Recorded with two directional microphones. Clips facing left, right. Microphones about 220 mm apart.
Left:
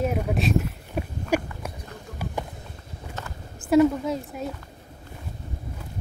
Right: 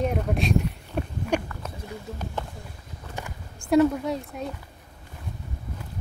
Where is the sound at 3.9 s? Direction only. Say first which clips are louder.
Left 1 dB; centre (ahead or behind).